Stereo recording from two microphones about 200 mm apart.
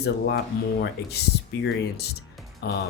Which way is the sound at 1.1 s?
55° left (ahead or behind).